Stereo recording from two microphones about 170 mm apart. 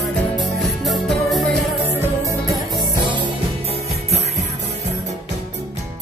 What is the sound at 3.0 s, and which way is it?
Music, 30° right (ahead or behind).